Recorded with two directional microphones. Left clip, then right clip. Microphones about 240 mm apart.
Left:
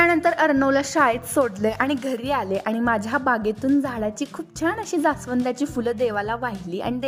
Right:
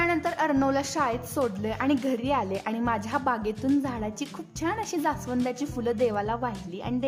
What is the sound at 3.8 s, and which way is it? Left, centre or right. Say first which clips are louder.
A woman's voice: left 6 dB; centre.